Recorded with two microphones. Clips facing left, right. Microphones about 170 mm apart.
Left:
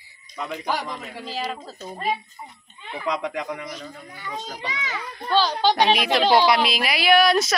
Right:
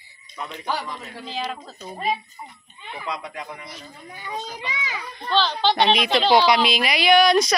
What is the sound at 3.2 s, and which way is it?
Speech, 90° left.